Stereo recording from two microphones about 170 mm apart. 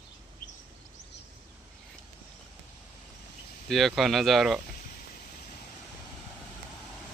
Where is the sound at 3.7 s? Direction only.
Centre (ahead or behind).